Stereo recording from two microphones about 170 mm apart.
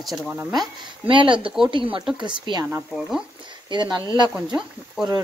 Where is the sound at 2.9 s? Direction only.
Centre (ahead or behind).